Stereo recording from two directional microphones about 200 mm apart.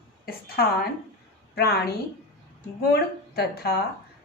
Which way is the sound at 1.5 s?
50° left (ahead or behind).